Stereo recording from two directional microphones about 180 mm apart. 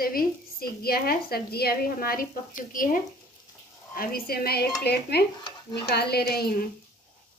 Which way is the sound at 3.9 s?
55° left (ahead or behind).